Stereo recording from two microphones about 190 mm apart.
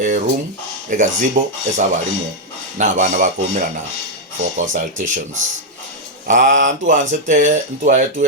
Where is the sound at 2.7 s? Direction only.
40° right (ahead or behind).